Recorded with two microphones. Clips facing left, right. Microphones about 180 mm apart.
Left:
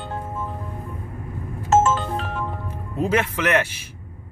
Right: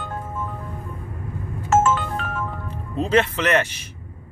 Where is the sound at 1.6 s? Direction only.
25° left (ahead or behind).